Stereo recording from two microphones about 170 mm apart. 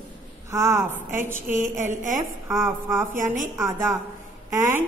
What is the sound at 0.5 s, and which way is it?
Speech, 15° right (ahead or behind).